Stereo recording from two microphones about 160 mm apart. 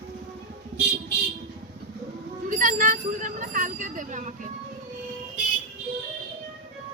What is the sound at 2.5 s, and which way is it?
Bicycle, 55° right (ahead or behind).